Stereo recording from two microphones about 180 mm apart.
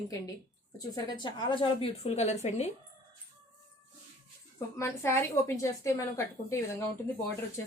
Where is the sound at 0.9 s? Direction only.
25° left (ahead or behind).